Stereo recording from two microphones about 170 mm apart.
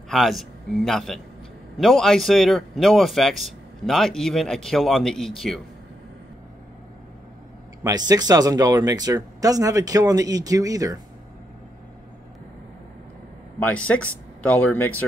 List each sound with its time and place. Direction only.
0.1 s speech: centre (ahead or behind)
7.8 s speech: 20° right (ahead or behind)
13.6 s speech: 10° left (ahead or behind)